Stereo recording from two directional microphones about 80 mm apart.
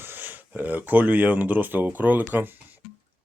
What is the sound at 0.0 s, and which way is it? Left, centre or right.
Speech, right.